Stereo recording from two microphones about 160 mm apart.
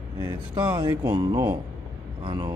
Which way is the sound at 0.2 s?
25° right (ahead or behind).